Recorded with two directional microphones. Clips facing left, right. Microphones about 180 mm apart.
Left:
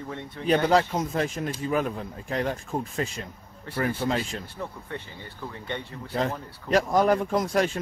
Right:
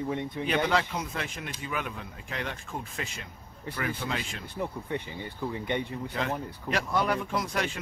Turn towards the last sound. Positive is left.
turn(degrees=40)  # may be behind; listen again after turning